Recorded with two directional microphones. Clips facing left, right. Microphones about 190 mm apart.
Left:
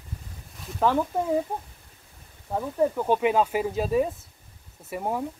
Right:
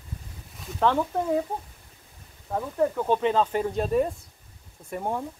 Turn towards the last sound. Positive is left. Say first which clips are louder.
# left 1 dB
turn(degrees=5)  # may be behind; listen again after turning